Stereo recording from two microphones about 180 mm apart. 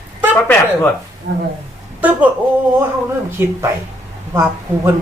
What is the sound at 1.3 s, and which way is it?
Speech, 85° right.